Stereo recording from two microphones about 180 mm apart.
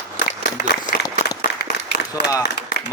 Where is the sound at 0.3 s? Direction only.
50° left (ahead or behind).